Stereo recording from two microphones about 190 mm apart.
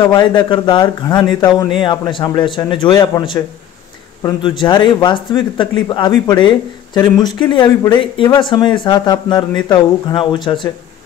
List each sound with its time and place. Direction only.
0.0 s speech: 20° left (ahead or behind)